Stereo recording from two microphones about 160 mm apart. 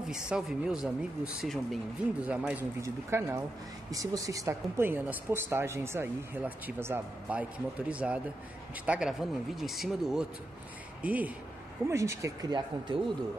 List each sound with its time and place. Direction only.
0.1 s speech: 5° right (ahead or behind); by 13.0 s 30° right (ahead or behind)